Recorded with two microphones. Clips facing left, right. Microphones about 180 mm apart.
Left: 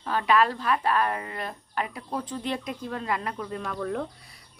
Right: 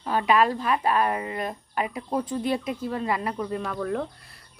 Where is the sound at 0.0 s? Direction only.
10° right (ahead or behind).